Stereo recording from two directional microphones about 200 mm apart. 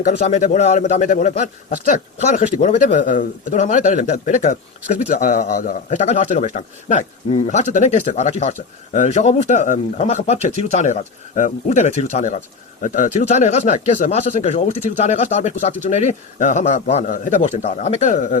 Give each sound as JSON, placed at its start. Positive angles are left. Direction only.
{"t": 0.0, "sound": "a man's voice", "side_deg": 40}